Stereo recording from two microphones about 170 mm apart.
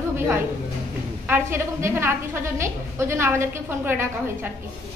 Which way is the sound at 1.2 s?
15° right (ahead or behind).